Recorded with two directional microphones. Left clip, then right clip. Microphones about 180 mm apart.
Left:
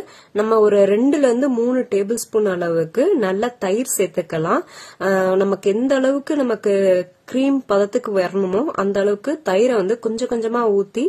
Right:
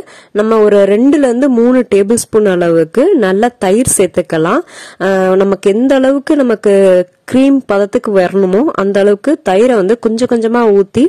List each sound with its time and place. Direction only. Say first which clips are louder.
0.4 s a man's voice: right 6 dB; 40° right (ahead or behind)